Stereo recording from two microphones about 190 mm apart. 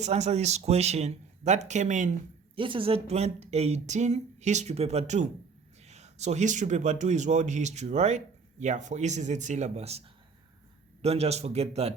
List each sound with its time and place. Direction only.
0.0 s a man's voice: 35° right (ahead or behind)
2.6 s a man's voice: 25° right (ahead or behind)
11.0 s a man's voice: 35° right (ahead or behind)